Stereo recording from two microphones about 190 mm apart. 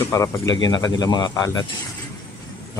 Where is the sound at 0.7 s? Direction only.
20° left (ahead or behind).